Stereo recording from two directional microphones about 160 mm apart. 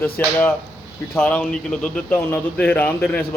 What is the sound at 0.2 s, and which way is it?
Speech, 10° left (ahead or behind).